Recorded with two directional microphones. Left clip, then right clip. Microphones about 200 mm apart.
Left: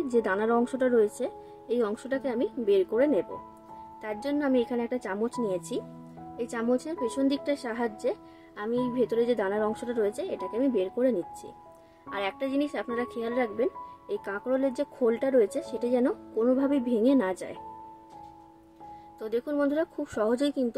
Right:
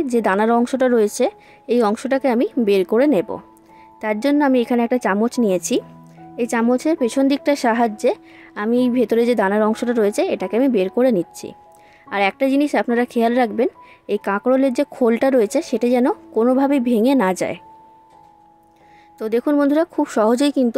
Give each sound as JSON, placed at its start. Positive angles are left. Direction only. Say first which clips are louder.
{"t": 0.0, "sound": "speech", "louder": "right 9 dB", "side_deg": -40}
{"t": 19.1, "sound": "speech", "louder": "right 11 dB", "side_deg": -40}